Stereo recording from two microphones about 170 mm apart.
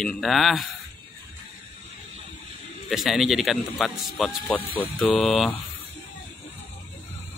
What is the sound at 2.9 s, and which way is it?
Speech, centre (ahead or behind).